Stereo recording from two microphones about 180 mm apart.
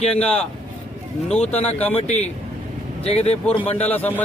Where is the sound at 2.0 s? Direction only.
40° left (ahead or behind).